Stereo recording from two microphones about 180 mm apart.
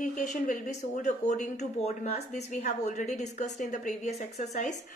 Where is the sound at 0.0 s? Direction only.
45° left (ahead or behind).